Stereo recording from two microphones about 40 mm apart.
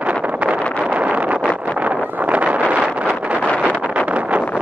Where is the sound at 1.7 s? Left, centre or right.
Right.